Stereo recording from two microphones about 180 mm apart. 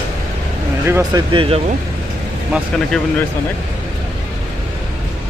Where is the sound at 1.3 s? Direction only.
30° right (ahead or behind).